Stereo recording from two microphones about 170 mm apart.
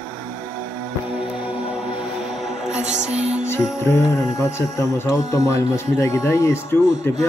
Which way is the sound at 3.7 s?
15° left (ahead or behind).